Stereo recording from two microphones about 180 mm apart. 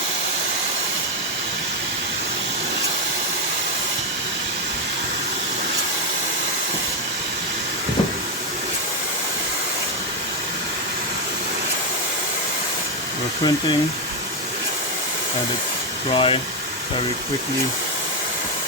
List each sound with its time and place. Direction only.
16.1 s speech: 30° left (ahead or behind)